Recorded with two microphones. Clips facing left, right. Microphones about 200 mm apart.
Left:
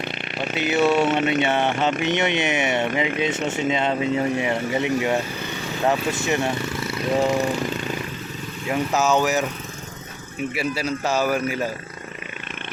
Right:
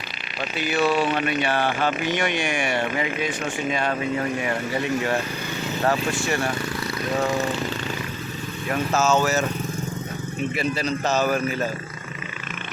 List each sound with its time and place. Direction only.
0.5 s a man's voice: 20° left (ahead or behind)
8.7 s a man's voice: 15° left (ahead or behind)
10.5 s a man's voice: 10° left (ahead or behind)